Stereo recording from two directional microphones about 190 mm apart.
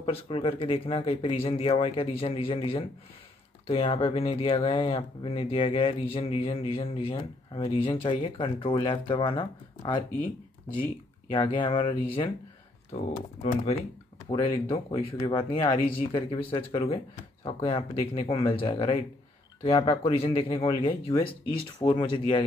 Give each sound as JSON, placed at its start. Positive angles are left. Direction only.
{"t": 0.0, "sound": "speech", "side_deg": 30}
{"t": 11.2, "sound": "speech", "side_deg": 25}